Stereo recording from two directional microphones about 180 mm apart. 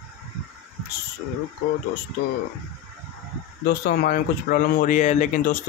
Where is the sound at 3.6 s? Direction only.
60° left (ahead or behind).